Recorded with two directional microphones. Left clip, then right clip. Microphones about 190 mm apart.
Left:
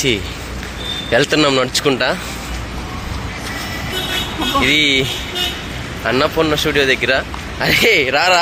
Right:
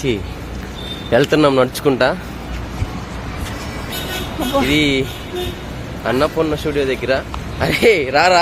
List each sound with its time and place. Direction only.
1.1 s speech: 15° right (ahead or behind)
4.6 s speech: centre (ahead or behind)
6.1 s speech: centre (ahead or behind)